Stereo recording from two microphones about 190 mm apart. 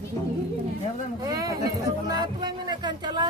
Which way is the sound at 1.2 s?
20° right (ahead or behind).